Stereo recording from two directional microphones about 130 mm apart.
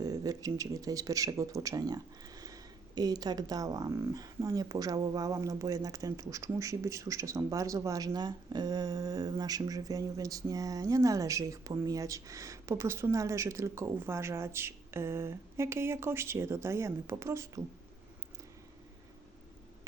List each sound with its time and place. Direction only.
0.0 s speech: 25° right (ahead or behind)